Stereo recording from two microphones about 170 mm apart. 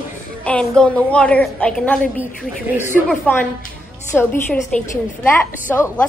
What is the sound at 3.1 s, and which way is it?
A woman's voice, 10° left (ahead or behind).